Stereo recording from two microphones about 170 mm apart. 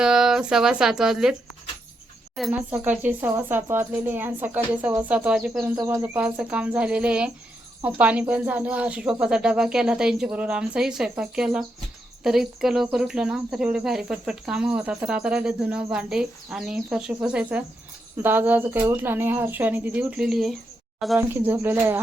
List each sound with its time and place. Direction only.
0.0 s speech: 5° right (ahead or behind)
21.2 s speech: 15° right (ahead or behind)